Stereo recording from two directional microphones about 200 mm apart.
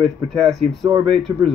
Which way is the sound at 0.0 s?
Centre (ahead or behind).